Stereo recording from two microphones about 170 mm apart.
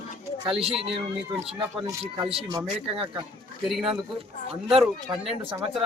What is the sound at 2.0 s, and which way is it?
Speech, 35° right (ahead or behind).